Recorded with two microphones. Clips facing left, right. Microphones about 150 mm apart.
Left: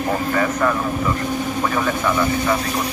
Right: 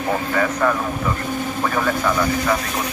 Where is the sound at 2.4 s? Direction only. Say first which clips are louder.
Left 1 dB; 30° left (ahead or behind).